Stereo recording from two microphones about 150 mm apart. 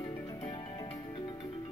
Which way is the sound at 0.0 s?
20° left (ahead or behind).